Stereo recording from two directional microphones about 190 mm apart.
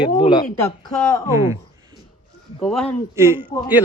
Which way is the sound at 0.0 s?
25° left (ahead or behind).